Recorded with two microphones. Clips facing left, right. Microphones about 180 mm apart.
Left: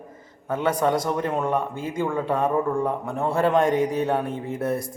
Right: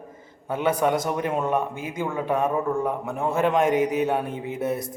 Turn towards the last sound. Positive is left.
turn(degrees=-25)  # may be behind; listen again after turning